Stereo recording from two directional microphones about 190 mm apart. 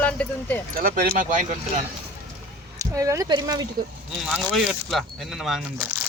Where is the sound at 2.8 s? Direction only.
15° right (ahead or behind).